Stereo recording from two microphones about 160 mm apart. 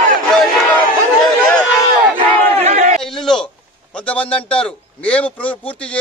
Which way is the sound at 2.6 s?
45° right (ahead or behind).